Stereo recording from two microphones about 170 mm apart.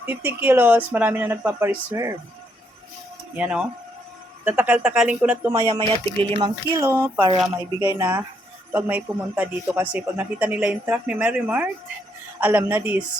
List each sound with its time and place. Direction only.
0.0 s a man's voice: 10° right (ahead or behind)
3.3 s a man's voice: 5° right (ahead or behind); by 6.5 s 30° right (ahead or behind)
6.7 s a man's voice: 15° right (ahead or behind)